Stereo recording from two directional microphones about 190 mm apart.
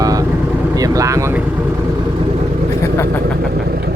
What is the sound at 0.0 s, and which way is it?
Vehicle, 20° right (ahead or behind).